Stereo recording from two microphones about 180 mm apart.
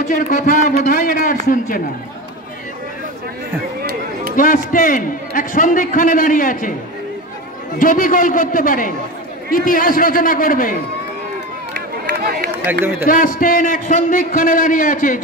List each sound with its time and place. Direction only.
0.0 s a man's voice: 45° left (ahead or behind)
4.4 s a man's voice: 50° left (ahead or behind)
7.8 s a man's voice: 50° left (ahead or behind)
11.7 s run: 65° right (ahead or behind)
13.0 s a man's voice: 50° left (ahead or behind)